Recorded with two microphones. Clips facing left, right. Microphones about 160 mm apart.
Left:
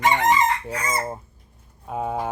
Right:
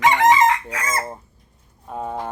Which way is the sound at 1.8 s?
5° left (ahead or behind).